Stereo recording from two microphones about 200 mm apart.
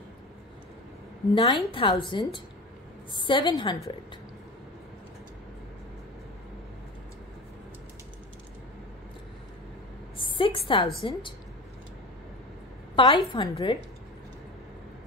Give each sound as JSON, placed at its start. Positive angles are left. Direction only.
{"t": 1.3, "sound": "a woman's voice", "side_deg": 20}
{"t": 10.1, "sound": "a sound", "side_deg": 25}
{"t": 11.0, "sound": "a woman's voice", "side_deg": 25}
{"t": 12.9, "sound": "a woman's voice", "side_deg": 25}